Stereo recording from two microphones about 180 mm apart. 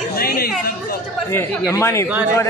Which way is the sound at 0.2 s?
55° left (ahead or behind).